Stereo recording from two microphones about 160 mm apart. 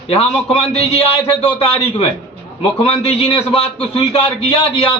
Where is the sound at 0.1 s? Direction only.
40° left (ahead or behind).